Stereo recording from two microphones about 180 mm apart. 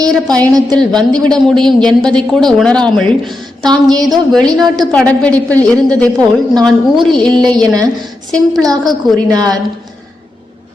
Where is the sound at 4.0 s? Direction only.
Centre (ahead or behind).